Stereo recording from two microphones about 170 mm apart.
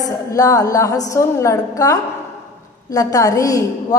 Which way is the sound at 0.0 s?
20° left (ahead or behind).